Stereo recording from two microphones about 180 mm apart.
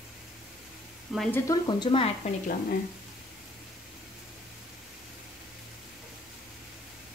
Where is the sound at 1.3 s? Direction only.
20° left (ahead or behind).